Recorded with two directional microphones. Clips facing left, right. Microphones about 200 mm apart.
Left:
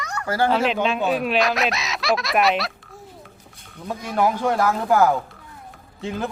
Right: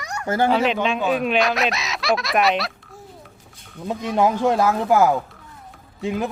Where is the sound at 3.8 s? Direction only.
20° right (ahead or behind).